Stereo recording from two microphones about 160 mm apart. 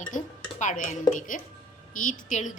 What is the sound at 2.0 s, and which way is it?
Speech, 50° left (ahead or behind).